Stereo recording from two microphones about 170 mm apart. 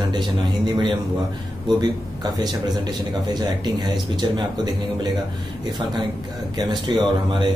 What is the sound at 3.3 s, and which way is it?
Speech, 25° right (ahead or behind).